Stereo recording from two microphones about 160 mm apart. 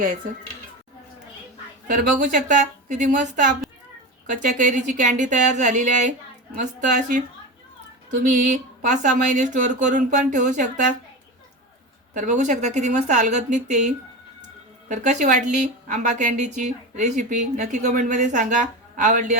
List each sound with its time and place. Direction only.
1.9 s a woman's voice: 55° right (ahead or behind)
8.1 s a woman's voice: 50° right (ahead or behind)
12.1 s a woman's voice: 50° right (ahead or behind)
14.8 s a woman's voice: 50° right (ahead or behind)